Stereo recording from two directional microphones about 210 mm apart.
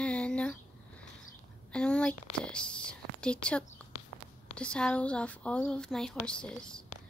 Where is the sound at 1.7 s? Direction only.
5° left (ahead or behind).